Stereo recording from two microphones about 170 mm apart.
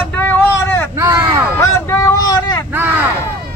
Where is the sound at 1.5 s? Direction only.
20° left (ahead or behind).